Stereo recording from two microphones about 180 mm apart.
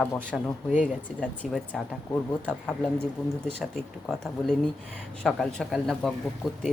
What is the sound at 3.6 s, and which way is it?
Speech, centre (ahead or behind).